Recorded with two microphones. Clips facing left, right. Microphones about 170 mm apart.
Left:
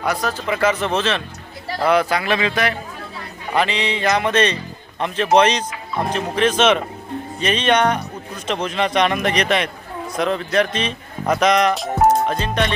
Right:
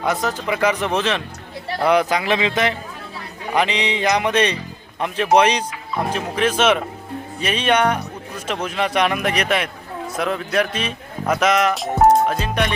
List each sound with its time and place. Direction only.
0.0 s a man's voice: 20° right (ahead or behind)